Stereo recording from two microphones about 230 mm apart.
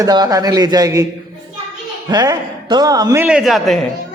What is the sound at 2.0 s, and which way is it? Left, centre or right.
A man's voice, centre.